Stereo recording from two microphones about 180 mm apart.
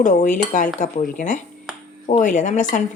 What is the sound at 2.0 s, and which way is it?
Speech, 45° left (ahead or behind).